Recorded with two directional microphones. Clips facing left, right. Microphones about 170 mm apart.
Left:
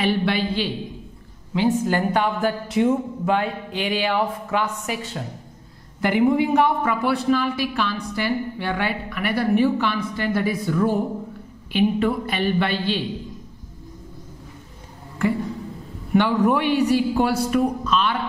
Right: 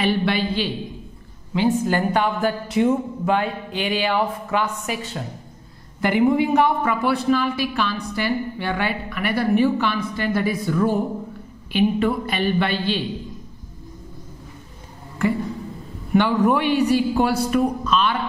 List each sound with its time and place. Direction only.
0.0 s a woman's voice: 5° right (ahead or behind)
16.2 s a woman's voice: 5° right (ahead or behind)